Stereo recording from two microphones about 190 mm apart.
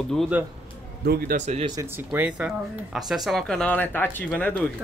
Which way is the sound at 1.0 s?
55° right (ahead or behind).